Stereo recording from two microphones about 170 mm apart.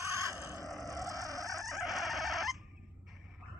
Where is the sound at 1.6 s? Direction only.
Centre (ahead or behind).